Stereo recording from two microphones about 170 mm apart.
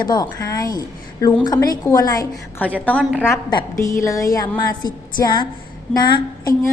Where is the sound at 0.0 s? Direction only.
25° left (ahead or behind).